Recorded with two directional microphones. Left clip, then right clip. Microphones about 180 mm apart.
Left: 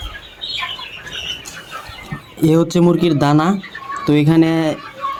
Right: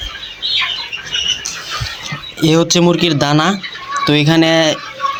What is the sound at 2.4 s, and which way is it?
Speech, 5° left (ahead or behind).